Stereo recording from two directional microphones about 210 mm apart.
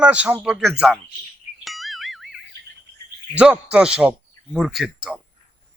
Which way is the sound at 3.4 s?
5° right (ahead or behind).